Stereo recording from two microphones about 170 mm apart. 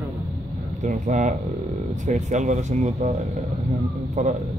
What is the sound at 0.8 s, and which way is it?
Speech, 45° right (ahead or behind).